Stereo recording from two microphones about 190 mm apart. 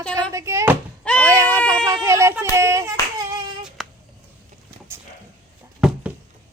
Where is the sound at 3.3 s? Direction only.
20° right (ahead or behind).